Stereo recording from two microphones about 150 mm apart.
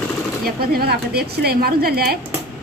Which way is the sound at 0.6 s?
90° right.